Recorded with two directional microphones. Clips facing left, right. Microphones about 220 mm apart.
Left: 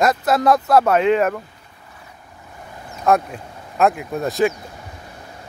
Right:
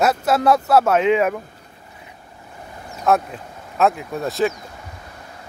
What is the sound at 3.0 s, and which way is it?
Speech, centre (ahead or behind).